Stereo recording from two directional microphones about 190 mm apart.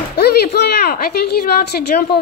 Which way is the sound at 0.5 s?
60° left (ahead or behind).